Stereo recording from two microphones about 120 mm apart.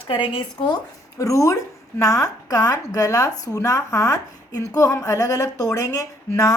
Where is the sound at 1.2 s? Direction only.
25° left (ahead or behind).